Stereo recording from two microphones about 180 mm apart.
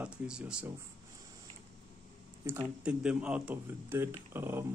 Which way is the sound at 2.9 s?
5° right (ahead or behind).